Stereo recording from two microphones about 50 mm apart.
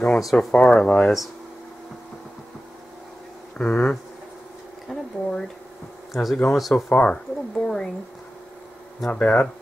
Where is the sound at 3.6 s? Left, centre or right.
Centre.